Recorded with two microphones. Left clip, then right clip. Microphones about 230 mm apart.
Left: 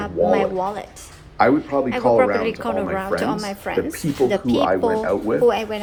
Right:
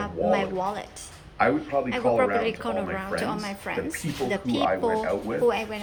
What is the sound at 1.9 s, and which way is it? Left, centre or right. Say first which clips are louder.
A woman's voice: left 7 dB; centre.